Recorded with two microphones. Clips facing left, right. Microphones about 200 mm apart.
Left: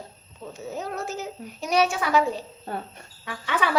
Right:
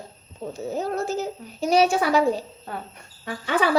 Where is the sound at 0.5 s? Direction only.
30° right (ahead or behind).